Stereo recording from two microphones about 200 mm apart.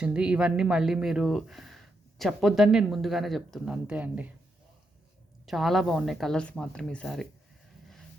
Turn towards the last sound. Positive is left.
turn(degrees=0)  # may be behind; listen again after turning